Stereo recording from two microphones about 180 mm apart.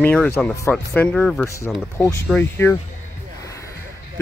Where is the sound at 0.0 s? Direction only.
5° left (ahead or behind).